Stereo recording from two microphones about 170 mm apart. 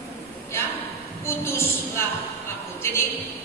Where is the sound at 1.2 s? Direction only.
15° left (ahead or behind).